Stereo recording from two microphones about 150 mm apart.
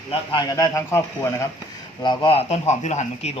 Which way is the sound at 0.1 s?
35° left (ahead or behind).